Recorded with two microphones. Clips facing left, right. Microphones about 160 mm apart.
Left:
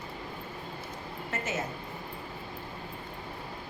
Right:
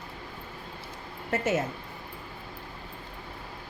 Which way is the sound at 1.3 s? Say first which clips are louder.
Right 8 dB; 55° right (ahead or behind).